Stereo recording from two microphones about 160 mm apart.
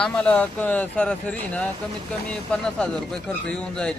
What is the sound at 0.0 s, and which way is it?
Speech, 10° left (ahead or behind).